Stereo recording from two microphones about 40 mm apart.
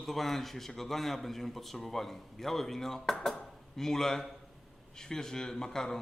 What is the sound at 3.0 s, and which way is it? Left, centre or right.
Speech, left.